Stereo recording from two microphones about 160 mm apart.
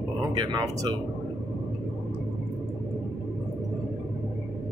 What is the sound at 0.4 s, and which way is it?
Speech, 25° right (ahead or behind).